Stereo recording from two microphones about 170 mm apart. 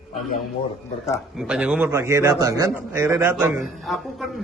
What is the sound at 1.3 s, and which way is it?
A man's voice, 5° right (ahead or behind).